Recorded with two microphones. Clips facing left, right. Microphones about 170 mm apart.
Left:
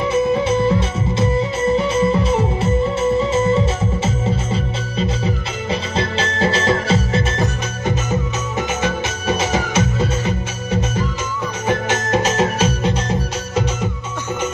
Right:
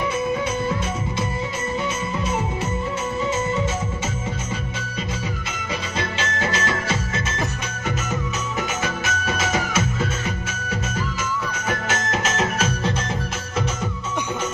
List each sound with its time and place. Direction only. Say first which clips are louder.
0.1 s music: left 7 dB; 30° left (ahead or behind)
11.6 s music: left 8 dB; 25° left (ahead or behind)